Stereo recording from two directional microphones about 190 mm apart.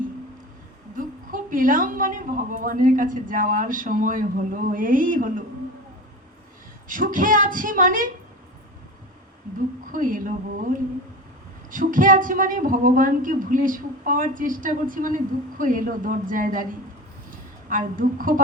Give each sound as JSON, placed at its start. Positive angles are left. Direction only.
{"t": 0.9, "sound": "speech", "side_deg": -45}
{"t": 6.8, "sound": "speech", "side_deg": -45}
{"t": 9.9, "sound": "speech", "side_deg": -45}
{"t": 17.7, "sound": "speech", "side_deg": -45}